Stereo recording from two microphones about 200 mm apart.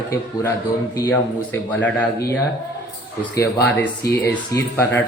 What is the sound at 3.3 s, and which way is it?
Speech, 10° left (ahead or behind).